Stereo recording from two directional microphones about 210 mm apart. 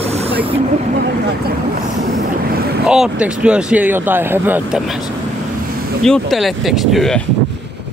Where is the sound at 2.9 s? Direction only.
5° right (ahead or behind).